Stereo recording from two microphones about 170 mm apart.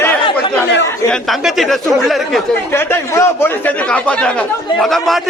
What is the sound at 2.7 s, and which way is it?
Speech, 15° left (ahead or behind).